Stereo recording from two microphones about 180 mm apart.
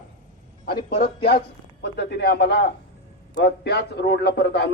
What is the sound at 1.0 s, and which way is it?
A man's voice, 65° left (ahead or behind).